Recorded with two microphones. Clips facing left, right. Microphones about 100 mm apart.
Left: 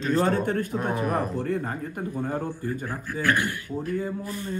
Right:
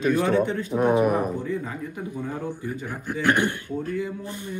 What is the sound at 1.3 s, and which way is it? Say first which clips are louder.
Speech: left 1 dB; 60° left (ahead or behind).